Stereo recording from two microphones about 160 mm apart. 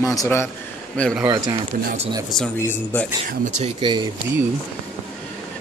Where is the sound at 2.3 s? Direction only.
10° left (ahead or behind).